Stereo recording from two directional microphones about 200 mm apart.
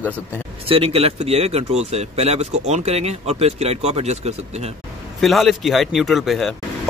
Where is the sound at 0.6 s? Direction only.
30° right (ahead or behind).